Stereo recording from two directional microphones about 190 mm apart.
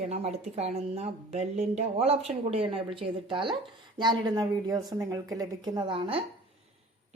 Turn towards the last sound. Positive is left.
turn(degrees=-30)  # may be behind; listen again after turning